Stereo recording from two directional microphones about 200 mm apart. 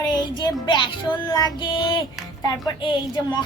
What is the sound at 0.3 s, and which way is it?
A child's voice, 20° left (ahead or behind).